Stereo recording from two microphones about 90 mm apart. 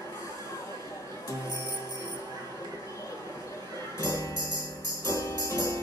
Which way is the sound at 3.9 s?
35° left (ahead or behind).